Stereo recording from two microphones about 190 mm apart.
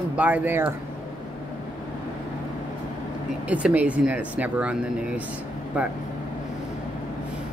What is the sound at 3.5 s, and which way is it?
Speech, 5° right (ahead or behind).